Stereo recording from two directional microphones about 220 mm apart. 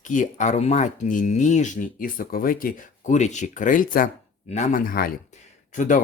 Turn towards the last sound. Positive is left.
turn(degrees=35)  # may be behind; listen again after turning